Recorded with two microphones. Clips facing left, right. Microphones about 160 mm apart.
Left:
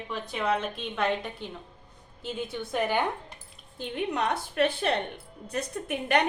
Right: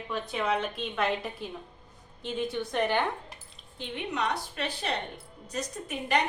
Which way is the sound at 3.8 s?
50° left (ahead or behind).